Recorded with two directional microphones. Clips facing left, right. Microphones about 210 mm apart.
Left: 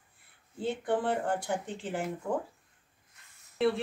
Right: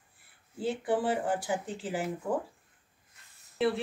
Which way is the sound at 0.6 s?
5° right (ahead or behind).